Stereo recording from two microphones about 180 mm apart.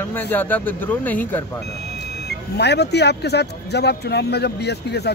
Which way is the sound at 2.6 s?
65° left (ahead or behind).